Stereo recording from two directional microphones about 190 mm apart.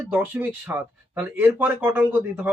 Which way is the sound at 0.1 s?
10° right (ahead or behind).